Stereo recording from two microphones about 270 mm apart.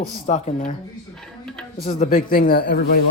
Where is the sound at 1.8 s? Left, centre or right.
Left.